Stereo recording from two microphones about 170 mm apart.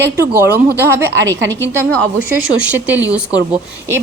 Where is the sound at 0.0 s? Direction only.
15° right (ahead or behind).